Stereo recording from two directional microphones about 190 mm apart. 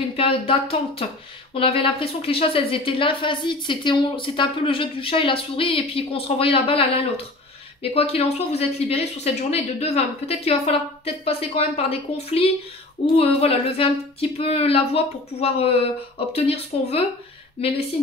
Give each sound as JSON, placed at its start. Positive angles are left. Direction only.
{"t": 0.1, "sound": "a woman's voice", "side_deg": 30}